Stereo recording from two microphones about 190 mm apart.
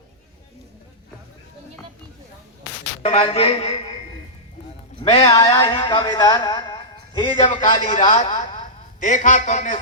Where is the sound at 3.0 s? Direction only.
30° left (ahead or behind).